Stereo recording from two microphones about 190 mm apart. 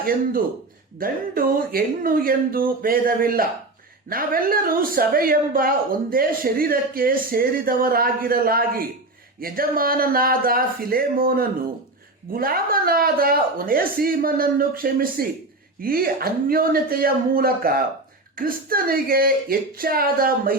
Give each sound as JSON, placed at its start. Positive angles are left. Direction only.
{"t": 0.0, "sound": "speech", "side_deg": -50}